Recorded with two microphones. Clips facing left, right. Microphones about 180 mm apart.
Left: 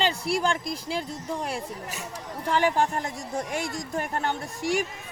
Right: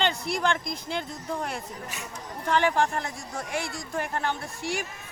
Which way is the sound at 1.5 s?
40° left (ahead or behind).